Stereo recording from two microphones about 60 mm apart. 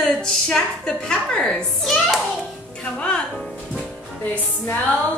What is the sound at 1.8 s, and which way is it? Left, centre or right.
Speech, centre.